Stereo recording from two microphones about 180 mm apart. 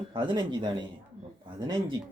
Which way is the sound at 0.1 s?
25° right (ahead or behind).